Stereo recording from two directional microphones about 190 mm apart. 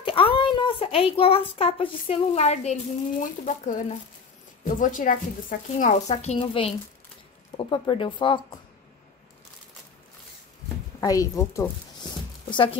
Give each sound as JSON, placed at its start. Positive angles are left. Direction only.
{"t": 0.0, "sound": "a child's voice", "side_deg": 30}
{"t": 11.0, "sound": "zipper", "side_deg": 15}